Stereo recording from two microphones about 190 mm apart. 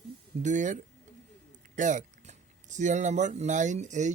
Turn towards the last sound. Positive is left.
turn(degrees=-40)  # may be behind; listen again after turning